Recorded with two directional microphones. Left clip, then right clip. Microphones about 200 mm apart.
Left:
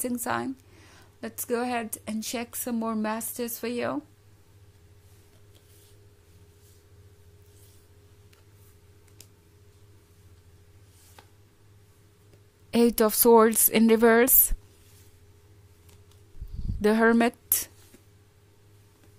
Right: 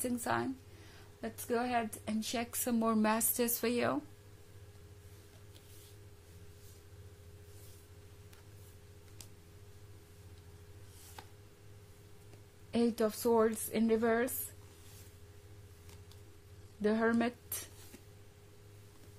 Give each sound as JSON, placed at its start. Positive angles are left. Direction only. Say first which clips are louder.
{"t": 0.0, "sound": "speech", "louder": "left 5 dB", "side_deg": 35}
{"t": 12.7, "sound": "a woman's voice", "louder": "left 10 dB", "side_deg": 45}
{"t": 16.8, "sound": "speech", "louder": "left 10 dB", "side_deg": 35}